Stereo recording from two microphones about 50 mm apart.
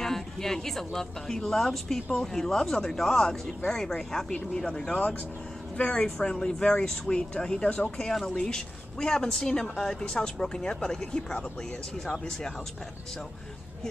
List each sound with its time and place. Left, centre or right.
0.0 s a woman's voice: centre
6.1 s speech: centre